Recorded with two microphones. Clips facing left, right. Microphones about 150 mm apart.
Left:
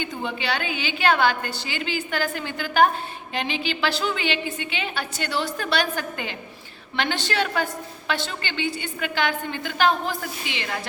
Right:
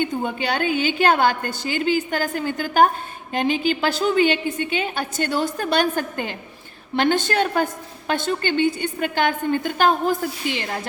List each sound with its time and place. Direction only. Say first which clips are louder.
0.0 s a woman's voice: right 5 dB; 50° right (ahead or behind)